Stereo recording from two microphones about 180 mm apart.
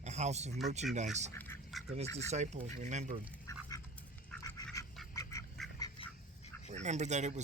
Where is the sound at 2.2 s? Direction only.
40° right (ahead or behind).